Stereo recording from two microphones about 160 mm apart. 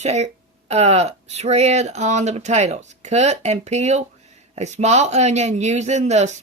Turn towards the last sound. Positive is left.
turn(degrees=-45)  # may be behind; listen again after turning